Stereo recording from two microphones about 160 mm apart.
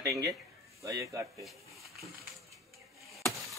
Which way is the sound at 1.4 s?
Centre (ahead or behind).